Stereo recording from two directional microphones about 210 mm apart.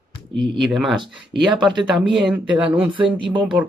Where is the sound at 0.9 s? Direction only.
20° right (ahead or behind).